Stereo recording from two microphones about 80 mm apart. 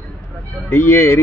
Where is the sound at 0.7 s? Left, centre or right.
Left.